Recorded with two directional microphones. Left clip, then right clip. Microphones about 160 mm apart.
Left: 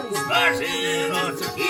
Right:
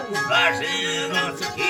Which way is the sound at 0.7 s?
40° right (ahead or behind).